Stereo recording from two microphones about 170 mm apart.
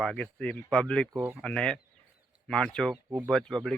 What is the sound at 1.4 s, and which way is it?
Speech, 5° left (ahead or behind).